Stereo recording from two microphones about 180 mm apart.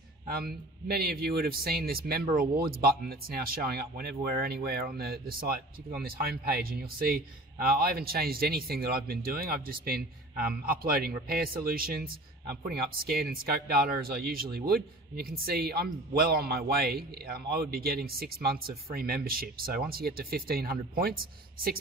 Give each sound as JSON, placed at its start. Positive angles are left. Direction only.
{"t": 0.3, "sound": "a man's voice", "side_deg": -60}